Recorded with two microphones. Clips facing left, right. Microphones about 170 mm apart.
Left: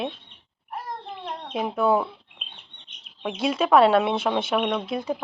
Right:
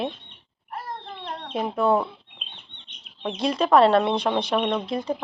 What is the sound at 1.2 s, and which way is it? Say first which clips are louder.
Chicken: even; 5° left (ahead or behind).